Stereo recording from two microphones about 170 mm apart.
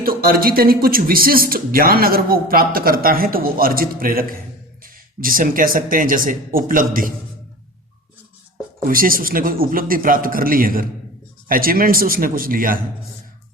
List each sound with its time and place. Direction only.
0.0 s speech: 60° right (ahead or behind)
8.8 s speech: 55° right (ahead or behind)